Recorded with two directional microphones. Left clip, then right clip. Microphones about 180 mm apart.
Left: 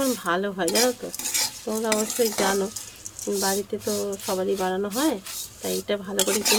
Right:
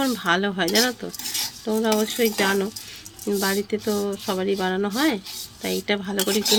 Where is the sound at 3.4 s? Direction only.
35° right (ahead or behind).